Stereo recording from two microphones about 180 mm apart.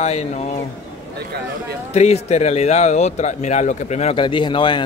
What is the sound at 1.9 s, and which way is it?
Speech, 35° left (ahead or behind).